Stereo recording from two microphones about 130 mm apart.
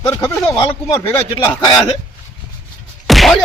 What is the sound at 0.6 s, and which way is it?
Speech, 25° left (ahead or behind).